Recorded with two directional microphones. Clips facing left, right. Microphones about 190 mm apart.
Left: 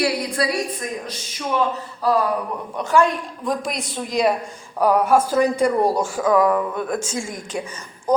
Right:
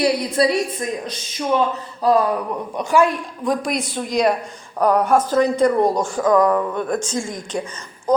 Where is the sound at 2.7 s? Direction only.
10° right (ahead or behind).